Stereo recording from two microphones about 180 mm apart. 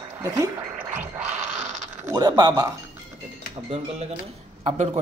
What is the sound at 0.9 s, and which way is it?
Gargling, 10° right (ahead or behind).